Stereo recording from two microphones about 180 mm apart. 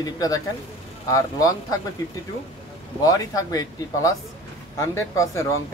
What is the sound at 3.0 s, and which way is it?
Speech, 20° left (ahead or behind).